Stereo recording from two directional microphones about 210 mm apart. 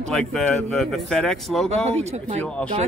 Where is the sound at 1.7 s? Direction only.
30° right (ahead or behind).